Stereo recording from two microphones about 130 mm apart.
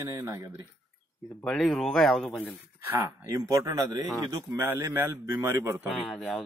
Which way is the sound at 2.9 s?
25° right (ahead or behind).